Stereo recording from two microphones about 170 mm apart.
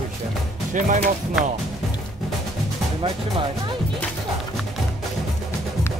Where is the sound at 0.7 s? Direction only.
50° right (ahead or behind).